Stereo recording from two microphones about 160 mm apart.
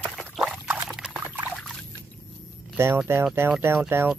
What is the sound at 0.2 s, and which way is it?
Pour, 5° right (ahead or behind).